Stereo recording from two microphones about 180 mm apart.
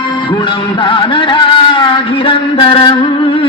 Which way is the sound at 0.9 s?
25° left (ahead or behind).